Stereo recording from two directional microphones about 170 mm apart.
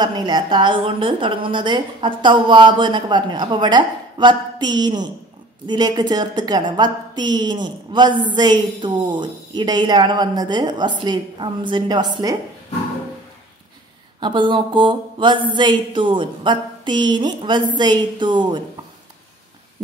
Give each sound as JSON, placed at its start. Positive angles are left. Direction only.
{"t": 0.0, "sound": "a woman's voice", "side_deg": -25}
{"t": 14.2, "sound": "a woman's voice", "side_deg": -30}